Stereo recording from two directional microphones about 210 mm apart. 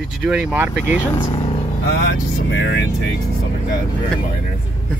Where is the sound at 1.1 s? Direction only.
25° left (ahead or behind).